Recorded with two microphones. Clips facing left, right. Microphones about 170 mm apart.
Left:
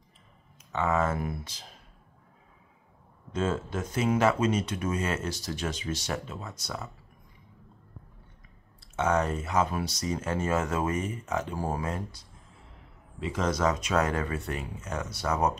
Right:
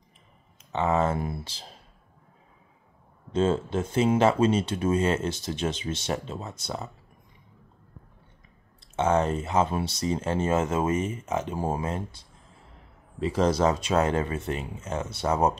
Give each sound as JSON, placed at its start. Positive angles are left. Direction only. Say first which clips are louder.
{"t": 0.7, "sound": "speech", "louder": "right 3 dB", "side_deg": -25}
{"t": 3.3, "sound": "speech", "louder": "right 5 dB", "side_deg": -30}
{"t": 8.9, "sound": "speech", "louder": "right 3 dB", "side_deg": -25}